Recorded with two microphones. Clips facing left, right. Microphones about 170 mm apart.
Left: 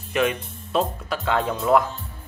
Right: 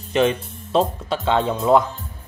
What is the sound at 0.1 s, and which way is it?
Speech, 30° right (ahead or behind).